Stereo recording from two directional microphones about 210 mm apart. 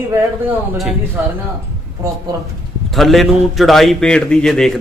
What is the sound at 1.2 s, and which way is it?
Speech, 10° right (ahead or behind).